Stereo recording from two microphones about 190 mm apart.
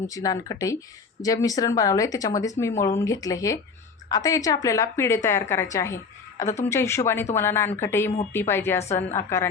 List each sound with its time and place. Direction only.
0.1 s speech: 20° left (ahead or behind)